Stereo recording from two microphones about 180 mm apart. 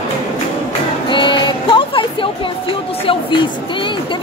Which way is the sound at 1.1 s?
25° left (ahead or behind).